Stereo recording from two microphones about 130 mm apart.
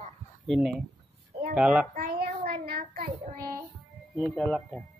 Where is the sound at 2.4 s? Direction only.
90° right.